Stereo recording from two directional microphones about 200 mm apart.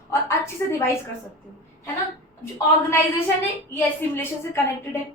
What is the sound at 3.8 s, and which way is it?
Speech, 10° left (ahead or behind).